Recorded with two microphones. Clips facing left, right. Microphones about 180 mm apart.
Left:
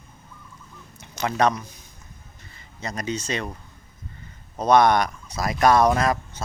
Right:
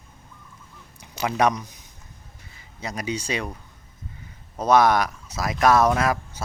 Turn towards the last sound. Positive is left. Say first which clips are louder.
# left 1 dB
turn(degrees=-5)  # may be behind; listen again after turning